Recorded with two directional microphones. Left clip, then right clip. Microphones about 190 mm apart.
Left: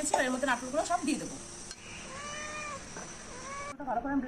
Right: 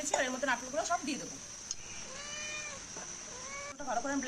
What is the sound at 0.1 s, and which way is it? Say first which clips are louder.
A woman's voice: left 3 dB; 5° right (ahead or behind).